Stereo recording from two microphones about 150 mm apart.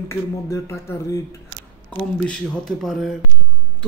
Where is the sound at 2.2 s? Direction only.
5° left (ahead or behind).